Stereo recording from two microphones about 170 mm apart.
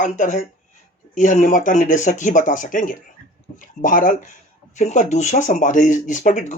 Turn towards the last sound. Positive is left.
turn(degrees=45)  # may be behind; listen again after turning